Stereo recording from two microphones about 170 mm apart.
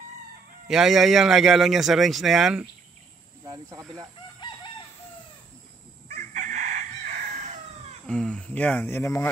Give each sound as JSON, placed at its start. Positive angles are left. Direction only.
{"t": 0.7, "sound": "speech", "side_deg": 0}
{"t": 3.4, "sound": "speech", "side_deg": -25}
{"t": 4.4, "sound": "chicken", "side_deg": 30}
{"t": 6.0, "sound": "chicken", "side_deg": -45}
{"t": 8.1, "sound": "speech", "side_deg": 5}